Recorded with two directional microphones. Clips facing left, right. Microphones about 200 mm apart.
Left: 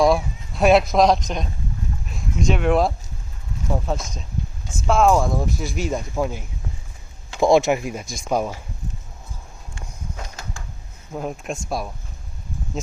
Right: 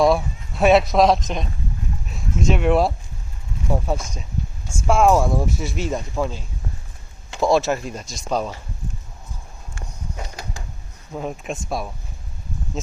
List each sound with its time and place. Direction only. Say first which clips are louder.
0.0 s a man's voice: even; centre (ahead or behind)
6.1 s speech: even; 15° left (ahead or behind)
11.1 s speech: even; centre (ahead or behind)